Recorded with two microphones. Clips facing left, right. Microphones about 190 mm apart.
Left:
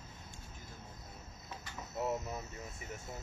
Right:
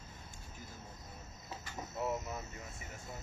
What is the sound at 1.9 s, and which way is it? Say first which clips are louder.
Speech: left 1 dB; 20° left (ahead or behind).